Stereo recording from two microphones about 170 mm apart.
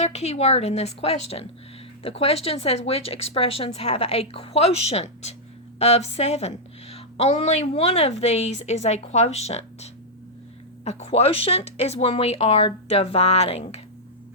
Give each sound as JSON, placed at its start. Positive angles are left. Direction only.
{"t": 0.0, "sound": "a woman's voice", "side_deg": 40}